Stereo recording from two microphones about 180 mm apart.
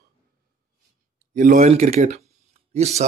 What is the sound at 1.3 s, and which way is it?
Speech, 45° right (ahead or behind).